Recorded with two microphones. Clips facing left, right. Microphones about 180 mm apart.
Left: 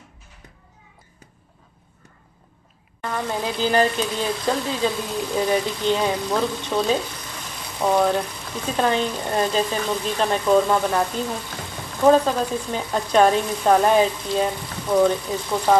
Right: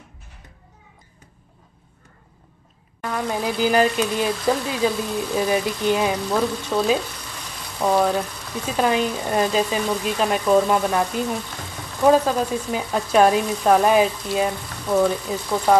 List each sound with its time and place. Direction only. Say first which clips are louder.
3.0 s speech: right 1 dB; 5° right (ahead or behind)